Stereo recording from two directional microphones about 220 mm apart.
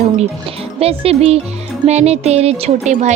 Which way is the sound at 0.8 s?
25° right (ahead or behind).